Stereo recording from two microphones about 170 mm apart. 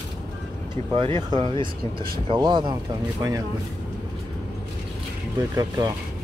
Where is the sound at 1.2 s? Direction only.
25° right (ahead or behind).